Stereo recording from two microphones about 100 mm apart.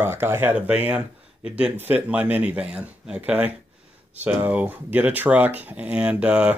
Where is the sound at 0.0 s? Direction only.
25° right (ahead or behind).